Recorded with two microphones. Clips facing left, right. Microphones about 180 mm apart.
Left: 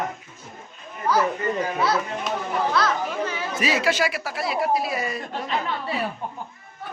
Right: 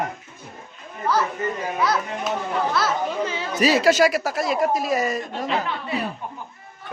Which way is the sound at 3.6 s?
35° right (ahead or behind).